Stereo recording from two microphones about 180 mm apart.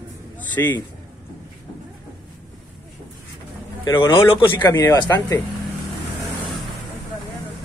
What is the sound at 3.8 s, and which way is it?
Speech, 25° left (ahead or behind).